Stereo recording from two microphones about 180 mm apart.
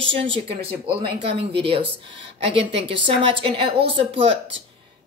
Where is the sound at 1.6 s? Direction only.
30° right (ahead or behind).